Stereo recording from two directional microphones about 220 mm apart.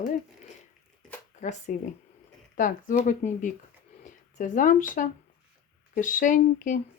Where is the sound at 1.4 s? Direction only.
30° left (ahead or behind).